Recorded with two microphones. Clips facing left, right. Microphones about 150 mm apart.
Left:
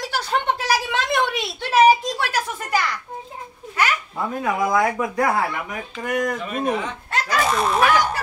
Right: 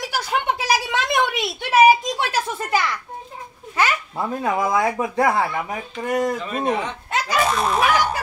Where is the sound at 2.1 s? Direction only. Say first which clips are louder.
Right 1 dB; 20° right (ahead or behind).